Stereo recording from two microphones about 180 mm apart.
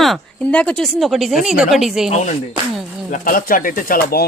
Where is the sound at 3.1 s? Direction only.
50° left (ahead or behind).